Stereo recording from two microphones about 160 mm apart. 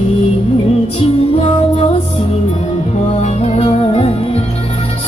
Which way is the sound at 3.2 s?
45° left (ahead or behind).